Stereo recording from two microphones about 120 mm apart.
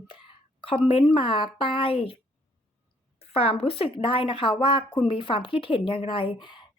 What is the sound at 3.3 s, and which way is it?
A woman's voice, 55° left (ahead or behind).